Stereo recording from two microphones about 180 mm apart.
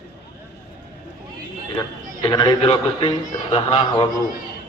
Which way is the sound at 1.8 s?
20° left (ahead or behind).